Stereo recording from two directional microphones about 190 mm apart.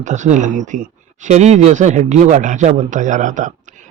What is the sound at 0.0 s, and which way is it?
Speech, 40° right (ahead or behind).